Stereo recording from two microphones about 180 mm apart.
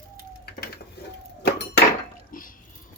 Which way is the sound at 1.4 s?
70° left (ahead or behind).